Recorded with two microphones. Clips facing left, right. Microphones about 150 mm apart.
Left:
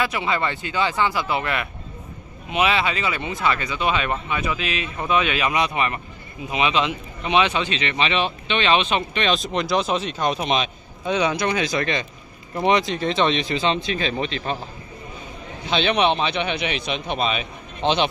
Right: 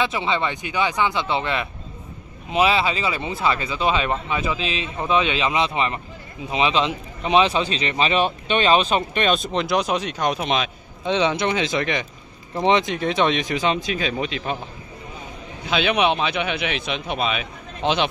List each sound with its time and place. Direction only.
0.0 s a man's voice: 25° right (ahead or behind)
9.3 s speech: centre (ahead or behind)
9.8 s speech: 10° right (ahead or behind)
11.1 s speech: 25° right (ahead or behind)
13.0 s speech: 5° right (ahead or behind)
15.7 s speech: 5° right (ahead or behind)